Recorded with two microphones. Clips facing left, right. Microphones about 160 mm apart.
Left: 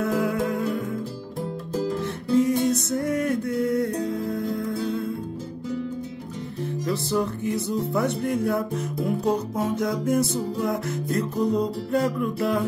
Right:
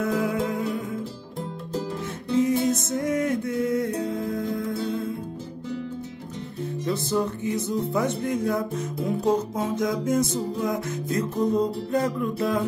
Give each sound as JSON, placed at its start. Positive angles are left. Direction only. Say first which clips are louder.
{"t": 0.0, "sound": "music", "louder": "left 1 dB", "side_deg": -20}
{"t": 2.3, "sound": "music", "louder": "left 1 dB", "side_deg": -20}
{"t": 6.9, "sound": "music", "louder": "even", "side_deg": -20}